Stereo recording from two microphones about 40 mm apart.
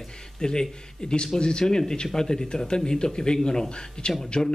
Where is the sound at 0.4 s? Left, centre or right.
Centre.